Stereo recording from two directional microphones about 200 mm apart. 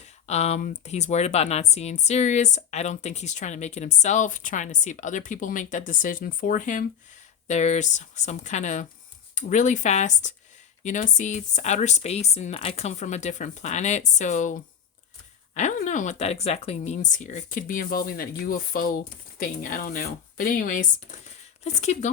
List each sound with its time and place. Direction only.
0.3 s speech: 35° left (ahead or behind)